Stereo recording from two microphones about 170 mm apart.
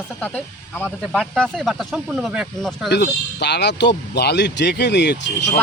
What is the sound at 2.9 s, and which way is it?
Speech, 75° left (ahead or behind).